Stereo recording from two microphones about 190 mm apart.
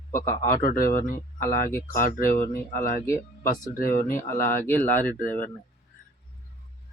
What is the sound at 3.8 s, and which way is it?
Speech, 50° left (ahead or behind).